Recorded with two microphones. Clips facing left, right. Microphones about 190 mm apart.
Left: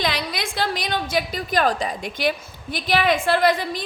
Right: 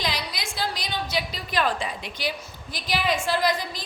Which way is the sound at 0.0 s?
55° left (ahead or behind).